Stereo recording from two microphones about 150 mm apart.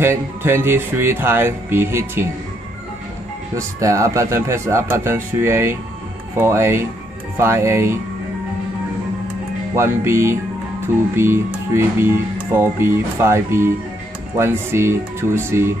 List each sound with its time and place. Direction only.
0.0 s speech: 15° right (ahead or behind)
3.5 s speech: 20° right (ahead or behind)
9.8 s speech: 20° right (ahead or behind)